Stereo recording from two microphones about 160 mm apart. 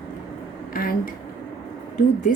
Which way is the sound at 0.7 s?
60° left (ahead or behind).